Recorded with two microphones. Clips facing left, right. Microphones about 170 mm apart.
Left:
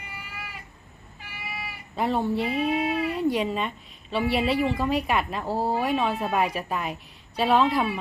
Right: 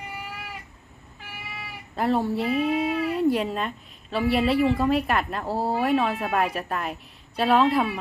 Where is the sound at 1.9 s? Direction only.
Centre (ahead or behind).